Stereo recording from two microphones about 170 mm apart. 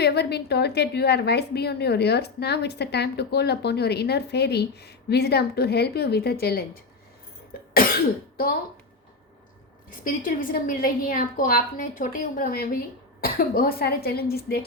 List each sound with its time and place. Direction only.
0.0 s a woman's voice: 75° left (ahead or behind)
9.9 s a woman's voice: 50° left (ahead or behind)